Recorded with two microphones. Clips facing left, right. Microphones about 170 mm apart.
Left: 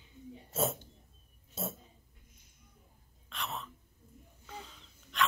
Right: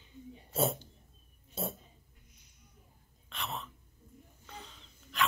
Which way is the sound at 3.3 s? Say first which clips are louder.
Even; centre (ahead or behind).